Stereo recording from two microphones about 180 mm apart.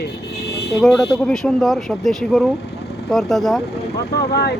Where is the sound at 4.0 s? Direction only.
65° left (ahead or behind).